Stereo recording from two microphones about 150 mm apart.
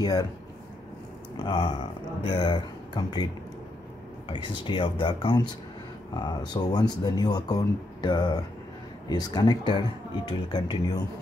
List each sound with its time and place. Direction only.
0.0 s speech: 25° left (ahead or behind)
1.3 s speech: 30° left (ahead or behind)
4.3 s speech: 35° left (ahead or behind)